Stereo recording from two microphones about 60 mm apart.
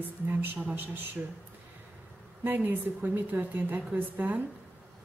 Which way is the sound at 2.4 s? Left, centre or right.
Right.